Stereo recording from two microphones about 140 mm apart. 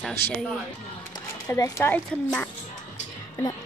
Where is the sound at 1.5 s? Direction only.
20° left (ahead or behind).